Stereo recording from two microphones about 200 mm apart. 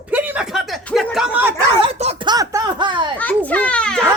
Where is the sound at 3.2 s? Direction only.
10° left (ahead or behind).